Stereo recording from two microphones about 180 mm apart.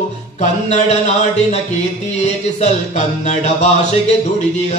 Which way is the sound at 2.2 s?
40° left (ahead or behind).